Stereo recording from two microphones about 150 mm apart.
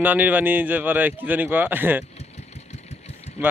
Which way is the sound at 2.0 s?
45° left (ahead or behind).